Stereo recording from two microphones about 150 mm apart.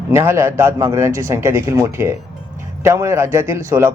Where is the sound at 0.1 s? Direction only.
15° right (ahead or behind).